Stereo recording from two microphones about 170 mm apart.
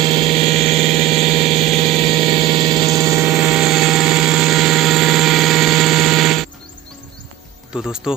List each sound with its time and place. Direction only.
0.0 s a sound: 30° right (ahead or behind)
3.3 s helicopter: 5° right (ahead or behind)
7.7 s music: 5° right (ahead or behind)